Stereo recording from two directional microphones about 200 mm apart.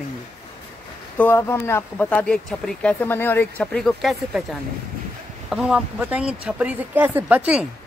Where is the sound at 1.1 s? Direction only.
10° left (ahead or behind).